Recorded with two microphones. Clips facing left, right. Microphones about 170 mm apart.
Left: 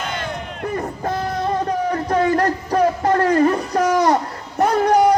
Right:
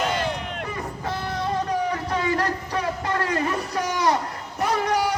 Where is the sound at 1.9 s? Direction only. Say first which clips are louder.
Left 7 dB; 45° left (ahead or behind).